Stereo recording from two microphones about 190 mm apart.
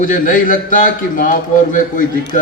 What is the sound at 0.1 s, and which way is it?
Speech, 45° left (ahead or behind).